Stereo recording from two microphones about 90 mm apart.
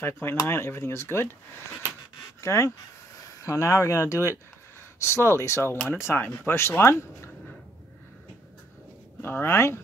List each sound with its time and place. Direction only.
0.0 s speech: 25° left (ahead or behind)
9.2 s speech: 25° left (ahead or behind)